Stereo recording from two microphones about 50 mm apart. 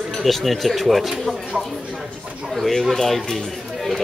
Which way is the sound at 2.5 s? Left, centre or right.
Centre.